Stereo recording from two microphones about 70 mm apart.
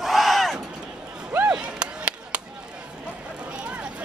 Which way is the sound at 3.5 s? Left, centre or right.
Centre.